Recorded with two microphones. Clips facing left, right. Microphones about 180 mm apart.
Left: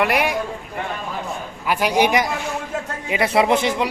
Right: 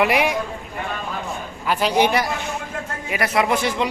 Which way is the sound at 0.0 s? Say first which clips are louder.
Right 1 dB; centre (ahead or behind).